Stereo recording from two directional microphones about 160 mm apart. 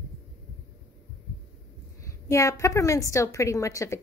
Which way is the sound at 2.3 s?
20° left (ahead or behind).